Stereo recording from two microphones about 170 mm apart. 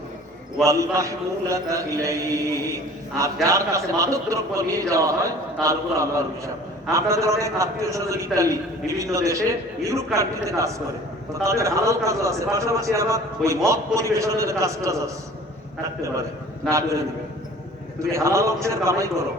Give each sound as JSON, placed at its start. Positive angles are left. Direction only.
{"t": 0.6, "sound": "a man's voice", "side_deg": -20}
{"t": 16.6, "sound": "a man's voice", "side_deg": -15}
{"t": 18.1, "sound": "a man's voice", "side_deg": -15}